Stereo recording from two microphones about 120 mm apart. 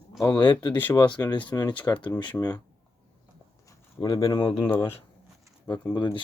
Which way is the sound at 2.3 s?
15° left (ahead or behind).